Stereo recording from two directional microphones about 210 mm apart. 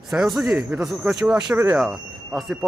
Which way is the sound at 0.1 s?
Centre (ahead or behind).